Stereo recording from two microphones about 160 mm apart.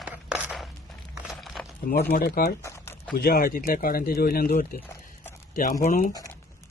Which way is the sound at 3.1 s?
70° left (ahead or behind).